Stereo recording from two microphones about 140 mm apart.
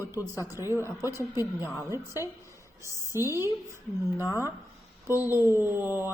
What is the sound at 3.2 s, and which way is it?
Speech, 20° left (ahead or behind).